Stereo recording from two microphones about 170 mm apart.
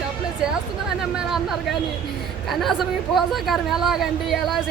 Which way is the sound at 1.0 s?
Centre (ahead or behind).